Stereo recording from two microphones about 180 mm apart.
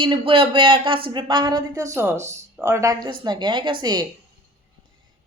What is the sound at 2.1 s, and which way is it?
Speech, 40° right (ahead or behind).